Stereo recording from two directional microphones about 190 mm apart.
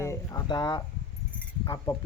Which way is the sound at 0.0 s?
15° left (ahead or behind).